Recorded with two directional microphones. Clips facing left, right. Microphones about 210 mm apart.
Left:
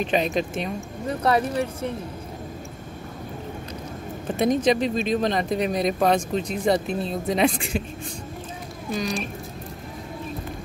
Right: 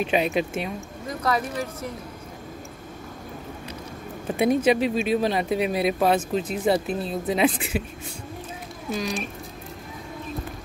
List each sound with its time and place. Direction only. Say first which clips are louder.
0.0 s speech: even; 5° right (ahead or behind)
1.0 s speech: left 4 dB; 30° left (ahead or behind)
4.4 s speech: even; 10° right (ahead or behind)
8.9 s speech: left 1 dB; centre (ahead or behind)